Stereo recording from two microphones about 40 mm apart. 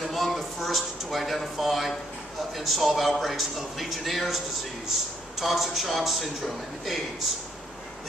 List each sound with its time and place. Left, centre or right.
0.1 s a sound: centre
2.5 s a man's voice: centre
5.4 s a man's voice: centre